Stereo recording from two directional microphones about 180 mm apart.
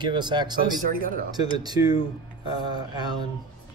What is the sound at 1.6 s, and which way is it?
Speech, 20° right (ahead or behind).